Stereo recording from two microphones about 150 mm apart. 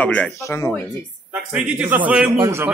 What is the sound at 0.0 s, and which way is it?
Speech, 10° left (ahead or behind).